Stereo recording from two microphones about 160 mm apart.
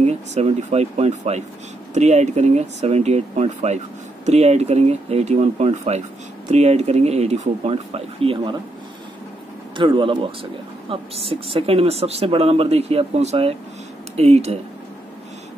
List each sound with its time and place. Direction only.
0.0 s speech: 45° right (ahead or behind)
9.8 s speech: 30° right (ahead or behind)